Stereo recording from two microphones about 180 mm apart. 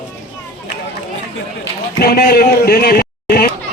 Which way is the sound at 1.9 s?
60° left (ahead or behind).